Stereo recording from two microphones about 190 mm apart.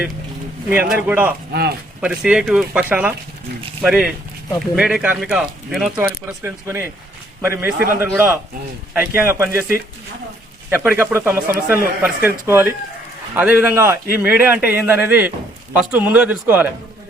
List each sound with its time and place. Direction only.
0.7 s a man's voice: 10° right (ahead or behind)
1.5 s speech: 55° right (ahead or behind)
2.0 s a man's voice: 5° right (ahead or behind)